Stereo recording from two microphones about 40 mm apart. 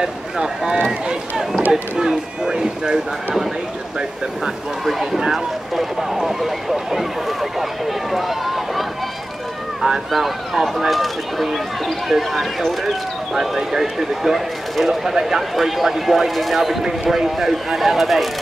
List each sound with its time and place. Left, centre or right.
0.0 s speech: centre
4.8 s speech: centre
8.1 s run: centre
10.1 s speech: centre